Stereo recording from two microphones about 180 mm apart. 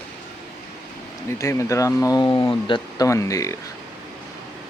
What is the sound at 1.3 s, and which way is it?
Speech, 15° left (ahead or behind).